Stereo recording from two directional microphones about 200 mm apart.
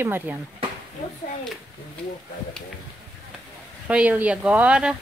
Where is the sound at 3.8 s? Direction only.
5° right (ahead or behind).